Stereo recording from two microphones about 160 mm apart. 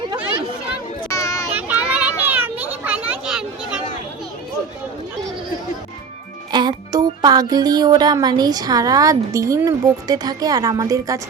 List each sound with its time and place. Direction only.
1.0 s a sound: 20° left (ahead or behind)
1.5 s children playing: 10° right (ahead or behind)
6.5 s music: 25° right (ahead or behind)